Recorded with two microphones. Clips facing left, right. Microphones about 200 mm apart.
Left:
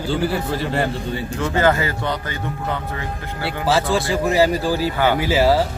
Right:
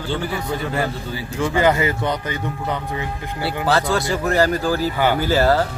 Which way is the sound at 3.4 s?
Centre (ahead or behind).